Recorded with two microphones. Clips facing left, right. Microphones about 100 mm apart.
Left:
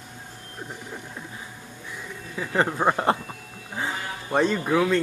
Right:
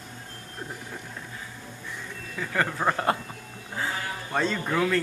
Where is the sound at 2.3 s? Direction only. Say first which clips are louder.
Left 4 dB; 20° left (ahead or behind).